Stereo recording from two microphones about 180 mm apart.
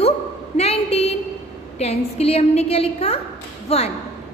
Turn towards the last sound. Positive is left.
turn(degrees=35)  # may be behind; listen again after turning